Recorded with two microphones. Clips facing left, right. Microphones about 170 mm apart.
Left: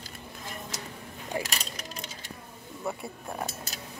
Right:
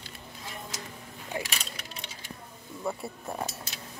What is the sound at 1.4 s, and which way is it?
Mechanisms, 40° left (ahead or behind).